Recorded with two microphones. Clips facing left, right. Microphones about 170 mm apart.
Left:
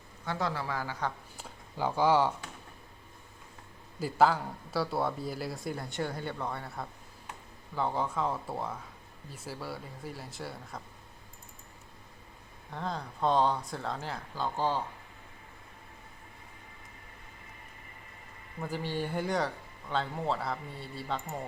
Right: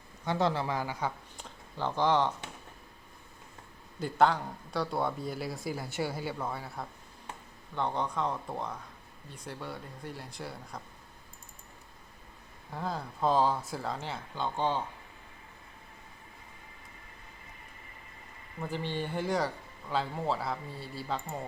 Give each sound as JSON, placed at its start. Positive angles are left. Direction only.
{"t": 0.3, "sound": "speech", "side_deg": -25}
{"t": 1.4, "sound": "speech", "side_deg": 10}
{"t": 4.0, "sound": "speech", "side_deg": 5}
{"t": 12.7, "sound": "speech", "side_deg": -5}
{"t": 18.6, "sound": "speech", "side_deg": 5}